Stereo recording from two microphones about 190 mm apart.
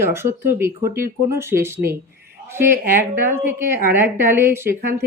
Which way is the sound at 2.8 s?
50° right (ahead or behind).